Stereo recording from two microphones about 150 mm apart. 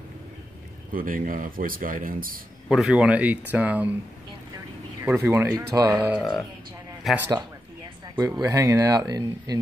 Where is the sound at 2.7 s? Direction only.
5° right (ahead or behind).